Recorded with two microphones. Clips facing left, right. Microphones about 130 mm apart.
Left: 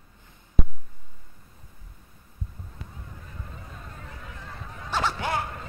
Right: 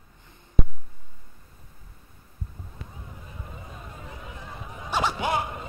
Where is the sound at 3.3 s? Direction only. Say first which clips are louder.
Right 2 dB; 15° right (ahead or behind).